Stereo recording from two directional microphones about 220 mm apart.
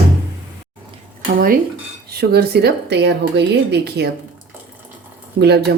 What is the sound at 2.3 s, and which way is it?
Speech, 45° right (ahead or behind).